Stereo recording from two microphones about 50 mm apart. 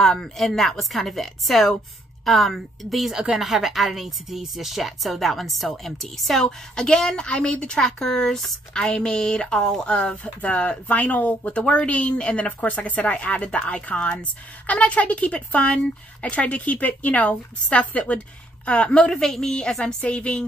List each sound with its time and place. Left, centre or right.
0.0 s a woman's voice: centre
3.1 s a woman's voice: centre; by 20.4 s left